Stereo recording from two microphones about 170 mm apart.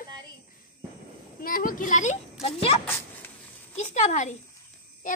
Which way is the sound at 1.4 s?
55° left (ahead or behind).